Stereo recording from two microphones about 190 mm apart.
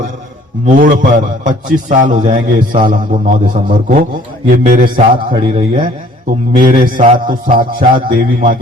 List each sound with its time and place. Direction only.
0.6 s a man's voice: 45° right (ahead or behind)
4.9 s a man's voice: 25° right (ahead or behind)
6.2 s a man's voice: 50° right (ahead or behind)